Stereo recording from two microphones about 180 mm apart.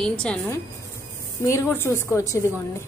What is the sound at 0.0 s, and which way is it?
A woman's voice, 5° left (ahead or behind).